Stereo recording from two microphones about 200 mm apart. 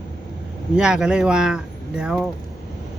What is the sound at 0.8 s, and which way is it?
Speech, 5° right (ahead or behind).